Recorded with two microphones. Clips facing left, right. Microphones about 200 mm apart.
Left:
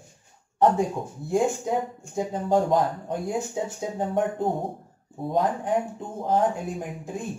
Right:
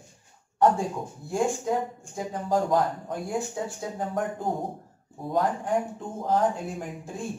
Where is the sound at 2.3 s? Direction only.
20° left (ahead or behind).